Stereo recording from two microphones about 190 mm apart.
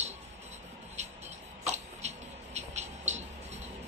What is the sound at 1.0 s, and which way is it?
Music, 35° right (ahead or behind).